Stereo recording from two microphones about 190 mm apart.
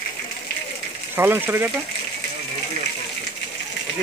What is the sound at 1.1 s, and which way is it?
Speech, 10° right (ahead or behind).